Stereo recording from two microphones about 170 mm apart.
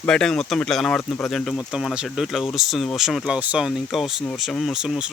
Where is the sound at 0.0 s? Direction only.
5° left (ahead or behind).